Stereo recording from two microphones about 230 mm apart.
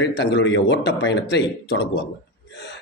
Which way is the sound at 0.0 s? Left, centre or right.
Left.